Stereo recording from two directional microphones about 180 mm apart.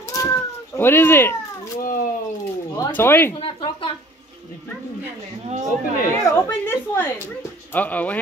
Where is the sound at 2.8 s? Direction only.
15° left (ahead or behind).